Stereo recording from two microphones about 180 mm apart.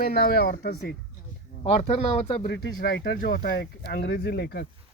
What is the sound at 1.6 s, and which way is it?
Speech, 35° left (ahead or behind).